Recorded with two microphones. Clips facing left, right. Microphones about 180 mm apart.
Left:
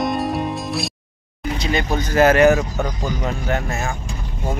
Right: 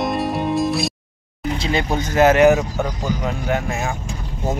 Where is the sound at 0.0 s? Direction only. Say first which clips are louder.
Even; centre (ahead or behind).